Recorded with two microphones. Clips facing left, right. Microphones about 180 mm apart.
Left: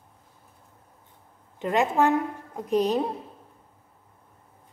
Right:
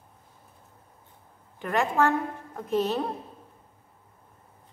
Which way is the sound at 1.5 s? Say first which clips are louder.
Left 2 dB; 20° left (ahead or behind).